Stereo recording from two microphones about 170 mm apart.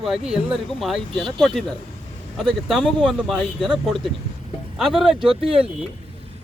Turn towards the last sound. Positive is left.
turn(degrees=-35)  # may be behind; listen again after turning